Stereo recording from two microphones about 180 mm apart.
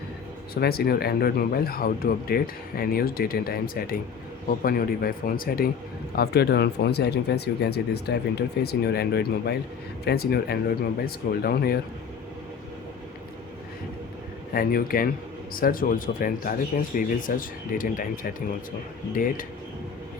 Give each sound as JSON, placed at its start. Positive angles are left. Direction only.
{"t": 0.5, "sound": "speech", "side_deg": 60}
{"t": 14.5, "sound": "speech", "side_deg": 55}